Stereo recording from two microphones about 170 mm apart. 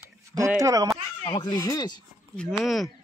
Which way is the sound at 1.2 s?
30° left (ahead or behind).